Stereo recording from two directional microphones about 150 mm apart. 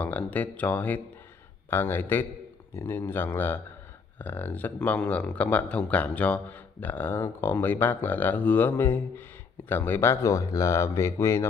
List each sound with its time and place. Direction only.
0.0 s speech: 10° left (ahead or behind)